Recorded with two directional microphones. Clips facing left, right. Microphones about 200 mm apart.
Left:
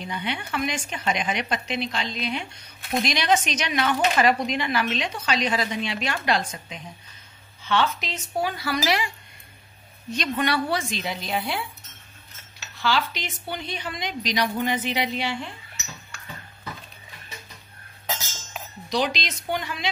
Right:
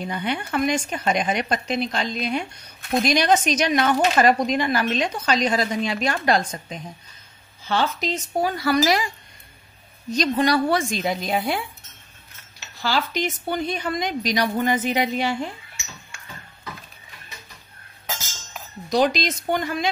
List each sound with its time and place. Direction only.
0.0 s a woman's voice: 45° right (ahead or behind)
10.1 s a woman's voice: 35° right (ahead or behind)
12.8 s a woman's voice: 45° right (ahead or behind)
18.9 s a woman's voice: 45° right (ahead or behind)